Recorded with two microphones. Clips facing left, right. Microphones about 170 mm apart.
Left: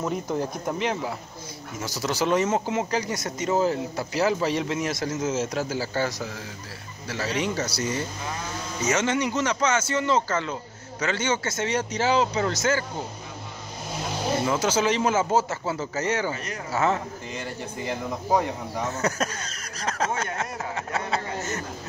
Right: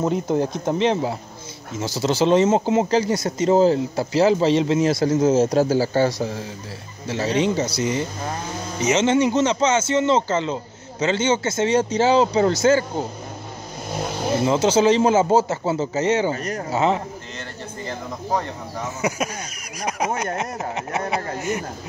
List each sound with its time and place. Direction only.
0.0 s speech: 25° right (ahead or behind)
14.4 s speech: 25° right (ahead or behind)
17.4 s speech: 10° left (ahead or behind)
18.9 s speech: 10° right (ahead or behind)